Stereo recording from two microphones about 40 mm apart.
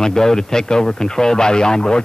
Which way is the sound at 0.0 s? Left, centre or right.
Centre.